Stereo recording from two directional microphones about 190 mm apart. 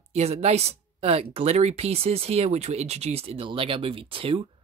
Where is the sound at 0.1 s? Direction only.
35° right (ahead or behind).